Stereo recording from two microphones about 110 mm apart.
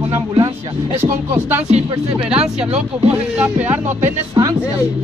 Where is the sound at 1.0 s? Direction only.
20° right (ahead or behind).